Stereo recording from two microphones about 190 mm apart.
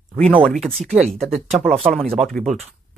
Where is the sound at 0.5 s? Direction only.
Centre (ahead or behind).